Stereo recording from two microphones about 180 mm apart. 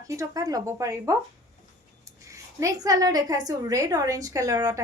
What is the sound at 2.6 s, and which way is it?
A woman's voice, 20° right (ahead or behind).